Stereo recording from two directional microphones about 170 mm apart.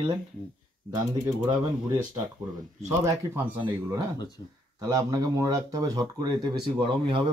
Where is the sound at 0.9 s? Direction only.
20° right (ahead or behind).